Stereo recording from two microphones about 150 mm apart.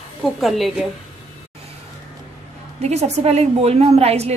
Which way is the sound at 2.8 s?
45° right (ahead or behind).